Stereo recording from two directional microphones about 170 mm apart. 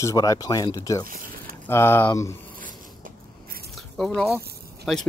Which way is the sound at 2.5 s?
55° right (ahead or behind).